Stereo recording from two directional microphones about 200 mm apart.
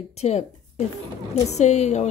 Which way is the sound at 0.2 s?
30° left (ahead or behind).